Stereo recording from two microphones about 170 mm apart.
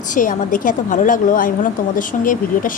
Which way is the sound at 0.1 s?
50° left (ahead or behind).